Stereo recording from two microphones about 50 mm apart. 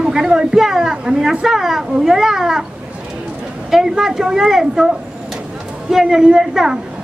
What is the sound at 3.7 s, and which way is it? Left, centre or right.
A woman's voice, centre.